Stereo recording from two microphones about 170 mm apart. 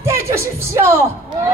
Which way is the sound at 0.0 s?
15° right (ahead or behind).